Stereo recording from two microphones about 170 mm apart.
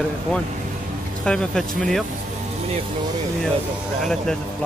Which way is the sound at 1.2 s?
5° left (ahead or behind).